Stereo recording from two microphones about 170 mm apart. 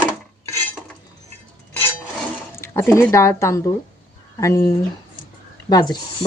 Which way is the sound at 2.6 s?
15° left (ahead or behind).